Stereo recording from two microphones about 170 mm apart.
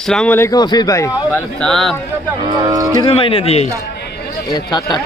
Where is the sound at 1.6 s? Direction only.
Centre (ahead or behind).